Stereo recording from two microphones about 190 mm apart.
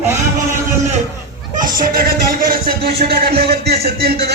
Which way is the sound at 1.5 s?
45° right (ahead or behind).